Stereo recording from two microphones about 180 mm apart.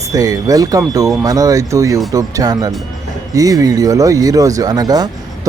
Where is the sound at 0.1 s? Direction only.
20° right (ahead or behind).